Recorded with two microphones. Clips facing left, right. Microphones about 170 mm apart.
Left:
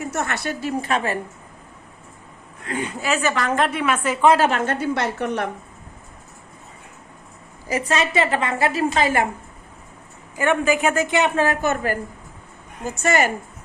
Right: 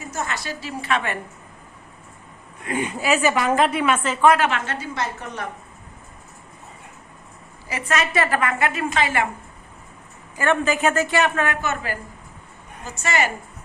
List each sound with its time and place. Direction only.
0.0 s a woman's voice: 65° left (ahead or behind); by 1.2 s 35° left (ahead or behind)
2.6 s a woman's voice: 15° right (ahead or behind)
4.0 s speech: 15° left (ahead or behind)
4.3 s a woman's voice: 40° left (ahead or behind); by 5.5 s 70° left (ahead or behind)
7.7 s a woman's voice: 35° left (ahead or behind)
10.3 s speech: 15° left (ahead or behind)
11.4 s a woman's voice: 45° left (ahead or behind)